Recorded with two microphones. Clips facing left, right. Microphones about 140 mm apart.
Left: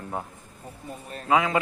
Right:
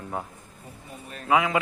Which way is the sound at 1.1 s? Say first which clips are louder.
Even; 30° left (ahead or behind).